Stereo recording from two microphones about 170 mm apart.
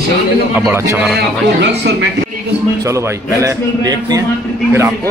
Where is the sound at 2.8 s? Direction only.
15° right (ahead or behind).